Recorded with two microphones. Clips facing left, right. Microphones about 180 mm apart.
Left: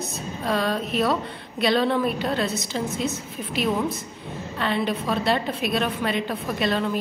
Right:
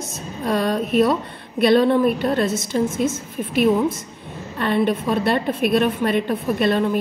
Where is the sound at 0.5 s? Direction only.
55° right (ahead or behind).